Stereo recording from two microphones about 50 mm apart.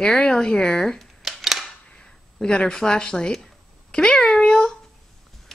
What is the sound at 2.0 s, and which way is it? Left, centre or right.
A child's voice, centre.